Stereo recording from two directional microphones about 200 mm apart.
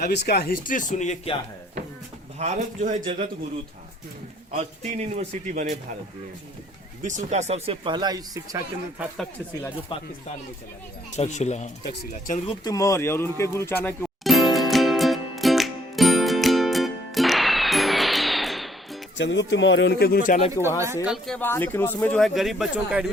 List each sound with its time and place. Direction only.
0.0 s speech: 55° left (ahead or behind); by 1.4 s 35° left (ahead or behind)
2.4 s speech: 35° right (ahead or behind)
4.5 s speech: 35° right (ahead or behind)
7.0 s speech: 35° right (ahead or behind); by 8.6 s 20° right (ahead or behind)
9.9 s speech: 25° left (ahead or behind)
11.2 s speech: 35° left (ahead or behind)
12.5 s a sound: 20° left (ahead or behind); by 18.9 s centre (ahead or behind)
19.1 s speech: 65° left (ahead or behind); by 20.5 s 40° left (ahead or behind)
20.5 s speech: 15° right (ahead or behind)
21.3 s speech: 10° left (ahead or behind)